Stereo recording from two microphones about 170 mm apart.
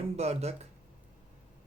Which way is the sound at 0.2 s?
40° right (ahead or behind).